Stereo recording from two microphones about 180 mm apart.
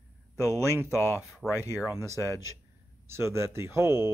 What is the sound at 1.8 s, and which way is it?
Speech, 15° right (ahead or behind).